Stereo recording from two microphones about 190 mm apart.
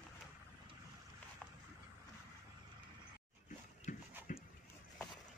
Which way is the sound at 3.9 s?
45° left (ahead or behind).